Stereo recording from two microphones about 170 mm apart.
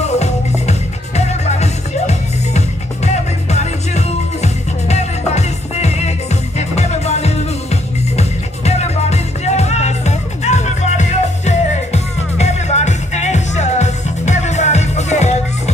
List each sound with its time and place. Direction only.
0.0 s music: 40° left (ahead or behind)